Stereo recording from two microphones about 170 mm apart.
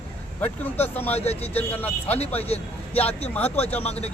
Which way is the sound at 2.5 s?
35° left (ahead or behind).